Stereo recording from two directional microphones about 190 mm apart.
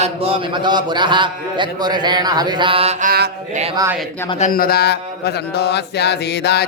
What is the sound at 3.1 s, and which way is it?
Mantra, 55° right (ahead or behind).